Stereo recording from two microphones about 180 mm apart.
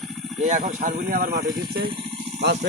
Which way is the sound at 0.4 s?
45° right (ahead or behind).